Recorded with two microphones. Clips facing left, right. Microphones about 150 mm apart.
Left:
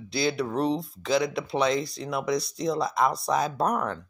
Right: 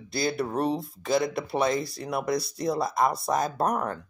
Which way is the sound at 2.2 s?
60° right (ahead or behind).